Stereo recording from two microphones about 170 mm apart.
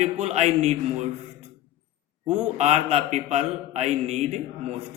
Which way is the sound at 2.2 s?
40° right (ahead or behind).